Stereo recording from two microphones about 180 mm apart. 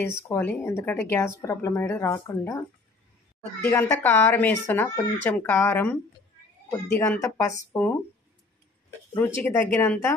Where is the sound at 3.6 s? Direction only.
10° left (ahead or behind).